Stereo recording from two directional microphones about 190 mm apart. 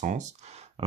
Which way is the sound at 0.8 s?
30° right (ahead or behind).